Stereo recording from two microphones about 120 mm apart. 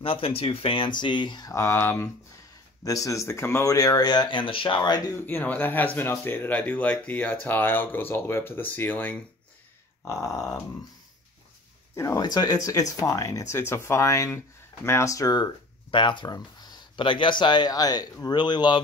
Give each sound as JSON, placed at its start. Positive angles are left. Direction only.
{"t": 0.0, "sound": "speech", "side_deg": 50}
{"t": 1.5, "sound": "speech", "side_deg": 20}
{"t": 5.1, "sound": "speech", "side_deg": 15}
{"t": 10.0, "sound": "speech", "side_deg": 25}
{"t": 11.9, "sound": "speech", "side_deg": 25}